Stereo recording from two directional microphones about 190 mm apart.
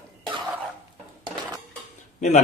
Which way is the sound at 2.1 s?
40° left (ahead or behind).